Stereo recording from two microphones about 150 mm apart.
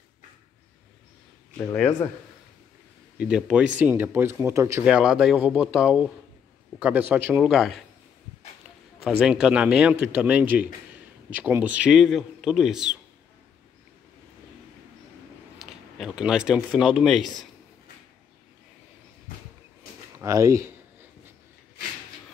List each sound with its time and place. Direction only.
1.6 s speech: 10° left (ahead or behind)
3.2 s a man's voice: 5° right (ahead or behind)
4.8 s a man's voice: 5° right (ahead or behind)
9.2 s a man's voice: 5° right (ahead or behind)
15.6 s speech: 5° right (ahead or behind)
20.2 s a sound: 20° right (ahead or behind)